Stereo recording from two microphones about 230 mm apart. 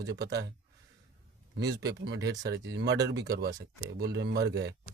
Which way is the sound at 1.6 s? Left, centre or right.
Right.